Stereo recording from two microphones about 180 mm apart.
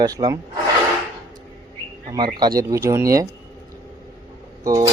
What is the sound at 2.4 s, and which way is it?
Speech, 20° right (ahead or behind).